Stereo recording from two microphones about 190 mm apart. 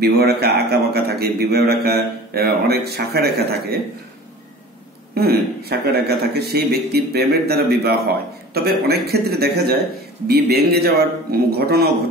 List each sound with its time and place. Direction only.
0.0 s a man's voice: 55° right (ahead or behind)
5.1 s a man's voice: 55° right (ahead or behind)